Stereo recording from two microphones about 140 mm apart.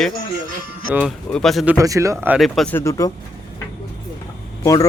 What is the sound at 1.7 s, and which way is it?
Speech, 25° right (ahead or behind).